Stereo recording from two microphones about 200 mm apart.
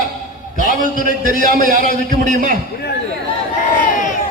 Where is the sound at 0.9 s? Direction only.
45° left (ahead or behind).